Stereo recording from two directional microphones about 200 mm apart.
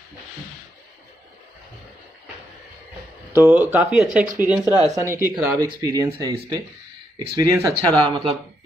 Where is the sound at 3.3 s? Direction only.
10° right (ahead or behind).